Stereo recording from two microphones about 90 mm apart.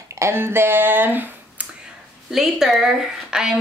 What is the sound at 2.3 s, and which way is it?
A woman's voice, 5° right (ahead or behind).